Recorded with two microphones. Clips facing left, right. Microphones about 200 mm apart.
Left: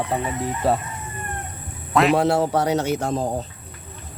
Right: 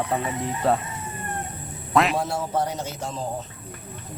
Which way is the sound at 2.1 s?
70° left (ahead or behind).